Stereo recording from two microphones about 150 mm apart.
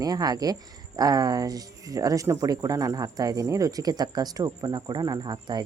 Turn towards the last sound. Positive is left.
turn(degrees=-30)  # may be behind; listen again after turning